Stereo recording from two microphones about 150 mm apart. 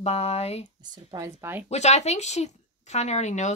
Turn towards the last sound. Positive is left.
turn(degrees=50)  # may be behind; listen again after turning